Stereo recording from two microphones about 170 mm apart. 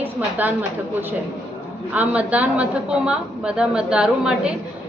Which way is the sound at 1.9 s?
10° right (ahead or behind).